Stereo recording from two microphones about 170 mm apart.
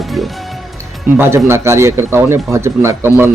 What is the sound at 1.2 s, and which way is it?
Speech, 15° right (ahead or behind).